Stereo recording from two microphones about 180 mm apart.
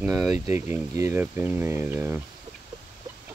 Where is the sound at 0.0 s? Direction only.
5° right (ahead or behind).